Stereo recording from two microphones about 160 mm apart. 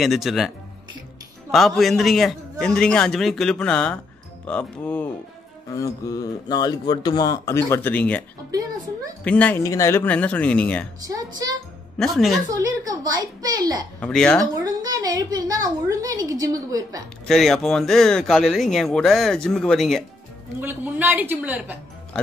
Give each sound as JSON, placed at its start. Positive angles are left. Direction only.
{"t": 0.0, "sound": "speech", "side_deg": 0}
{"t": 1.5, "sound": "speech", "side_deg": 0}
{"t": 5.8, "sound": "speech", "side_deg": 20}
{"t": 8.5, "sound": "speech", "side_deg": -20}
{"t": 9.2, "sound": "speech", "side_deg": 10}
{"t": 9.6, "sound": "speech", "side_deg": 20}
{"t": 11.1, "sound": "speech", "side_deg": -25}
{"t": 12.0, "sound": "speech", "side_deg": 0}
{"t": 12.5, "sound": "a child's voice", "side_deg": -25}
{"t": 13.9, "sound": "speech", "side_deg": 5}
{"t": 14.6, "sound": "a woman's voice", "side_deg": -25}
{"t": 17.3, "sound": "speech", "side_deg": 0}
{"t": 20.6, "sound": "a woman's voice", "side_deg": -10}